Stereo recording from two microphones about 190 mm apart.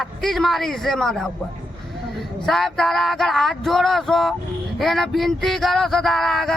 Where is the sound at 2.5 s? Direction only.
Centre (ahead or behind).